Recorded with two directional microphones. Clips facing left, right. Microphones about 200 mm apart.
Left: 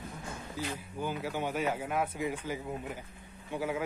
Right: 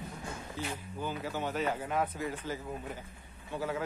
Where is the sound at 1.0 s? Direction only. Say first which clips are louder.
Left 2 dB; 10° left (ahead or behind).